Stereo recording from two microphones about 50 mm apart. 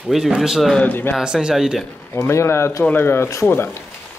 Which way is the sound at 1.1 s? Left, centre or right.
Centre.